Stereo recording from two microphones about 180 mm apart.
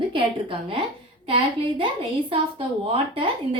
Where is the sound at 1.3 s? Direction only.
30° right (ahead or behind).